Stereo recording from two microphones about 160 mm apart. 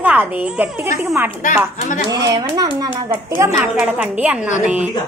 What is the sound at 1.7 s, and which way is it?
Speech, 55° left (ahead or behind).